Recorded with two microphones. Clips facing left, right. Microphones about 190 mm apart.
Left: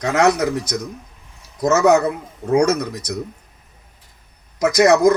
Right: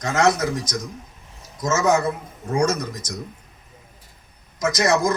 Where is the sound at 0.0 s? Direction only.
65° left (ahead or behind).